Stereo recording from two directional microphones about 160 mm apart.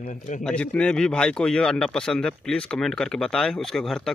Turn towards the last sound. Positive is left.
turn(degrees=5)  # may be behind; listen again after turning